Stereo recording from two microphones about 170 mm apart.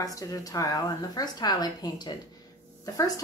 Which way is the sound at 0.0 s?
20° left (ahead or behind).